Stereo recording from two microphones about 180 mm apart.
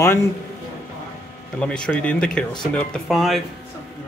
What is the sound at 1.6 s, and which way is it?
Speech, 5° left (ahead or behind).